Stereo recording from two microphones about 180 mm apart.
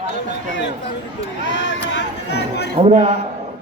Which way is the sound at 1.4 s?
90° left.